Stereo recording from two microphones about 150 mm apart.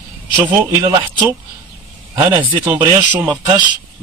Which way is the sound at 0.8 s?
30° right (ahead or behind).